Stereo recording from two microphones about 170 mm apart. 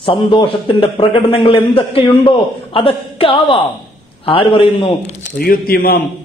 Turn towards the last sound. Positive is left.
turn(degrees=60)  # may be behind; listen again after turning